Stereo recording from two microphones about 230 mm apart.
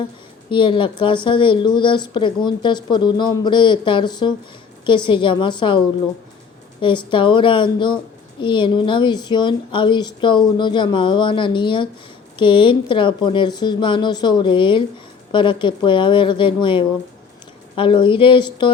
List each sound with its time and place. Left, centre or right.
0.5 s a woman's voice: left
6.8 s a woman's voice: left